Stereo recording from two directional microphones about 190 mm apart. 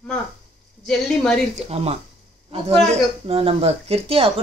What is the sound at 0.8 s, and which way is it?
Speech, 5° left (ahead or behind).